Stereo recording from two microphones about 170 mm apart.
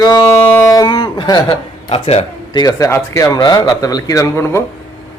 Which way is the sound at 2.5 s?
25° left (ahead or behind).